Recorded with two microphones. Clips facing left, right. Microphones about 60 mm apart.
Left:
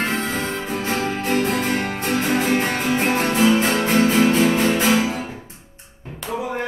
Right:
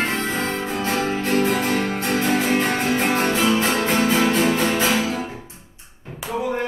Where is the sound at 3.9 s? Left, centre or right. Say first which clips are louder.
Left 4 dB; right.